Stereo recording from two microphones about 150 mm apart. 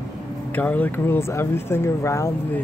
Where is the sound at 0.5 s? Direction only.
10° left (ahead or behind).